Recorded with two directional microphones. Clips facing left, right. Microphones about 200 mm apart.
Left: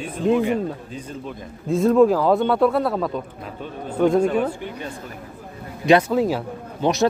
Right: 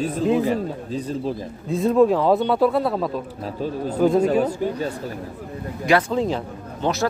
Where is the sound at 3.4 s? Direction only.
35° right (ahead or behind).